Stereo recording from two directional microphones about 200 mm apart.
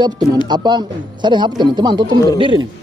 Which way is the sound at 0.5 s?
20° right (ahead or behind).